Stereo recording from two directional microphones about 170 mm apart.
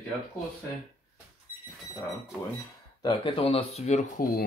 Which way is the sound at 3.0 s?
30° left (ahead or behind).